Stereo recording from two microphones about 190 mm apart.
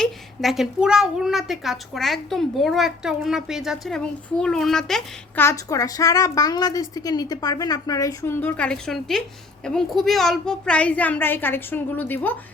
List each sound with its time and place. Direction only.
0.0 s a child's voice: centre (ahead or behind)
5.5 s a woman's voice: 15° left (ahead or behind)